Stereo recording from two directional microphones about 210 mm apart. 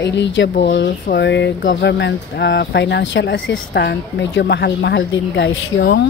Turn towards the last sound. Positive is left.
turn(degrees=55)  # may be behind; listen again after turning